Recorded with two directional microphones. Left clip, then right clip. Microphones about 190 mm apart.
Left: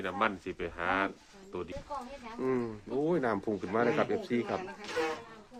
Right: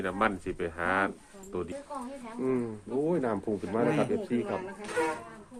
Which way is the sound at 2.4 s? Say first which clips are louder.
Right 2 dB; 25° left (ahead or behind).